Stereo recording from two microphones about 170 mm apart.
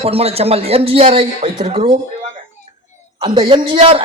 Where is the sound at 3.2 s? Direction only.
30° right (ahead or behind).